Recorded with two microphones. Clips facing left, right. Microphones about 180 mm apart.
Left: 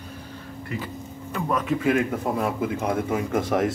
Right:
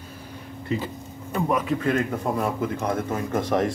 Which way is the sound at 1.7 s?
5° left (ahead or behind).